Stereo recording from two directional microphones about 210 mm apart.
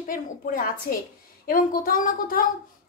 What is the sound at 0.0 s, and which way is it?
A woman's voice, 40° left (ahead or behind).